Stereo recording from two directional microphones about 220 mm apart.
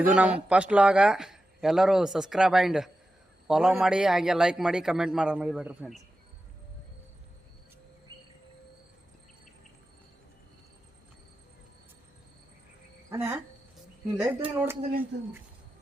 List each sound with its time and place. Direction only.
0.0 s speech: 5° right (ahead or behind)
8.1 s insect: 20° right (ahead or behind)
13.1 s speech: 10° right (ahead or behind)